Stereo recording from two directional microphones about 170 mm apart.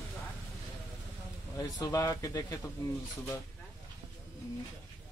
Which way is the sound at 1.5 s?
20° left (ahead or behind).